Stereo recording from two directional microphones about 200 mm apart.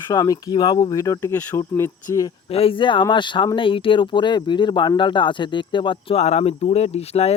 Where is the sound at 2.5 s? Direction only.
25° left (ahead or behind).